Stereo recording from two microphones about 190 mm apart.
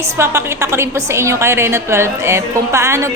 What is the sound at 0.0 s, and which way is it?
A woman's voice, 15° right (ahead or behind).